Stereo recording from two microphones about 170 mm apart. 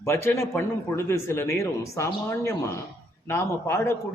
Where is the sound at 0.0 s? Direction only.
15° left (ahead or behind).